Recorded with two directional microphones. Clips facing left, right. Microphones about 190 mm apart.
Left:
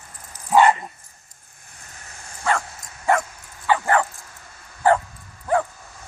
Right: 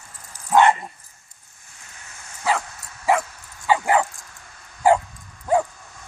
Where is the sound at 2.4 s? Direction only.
5° right (ahead or behind).